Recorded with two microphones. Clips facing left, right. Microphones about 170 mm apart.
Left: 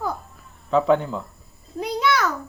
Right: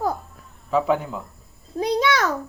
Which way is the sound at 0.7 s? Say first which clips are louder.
Left 2 dB; 5° right (ahead or behind).